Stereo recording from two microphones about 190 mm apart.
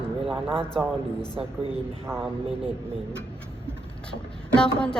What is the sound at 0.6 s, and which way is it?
Speech, 5° left (ahead or behind).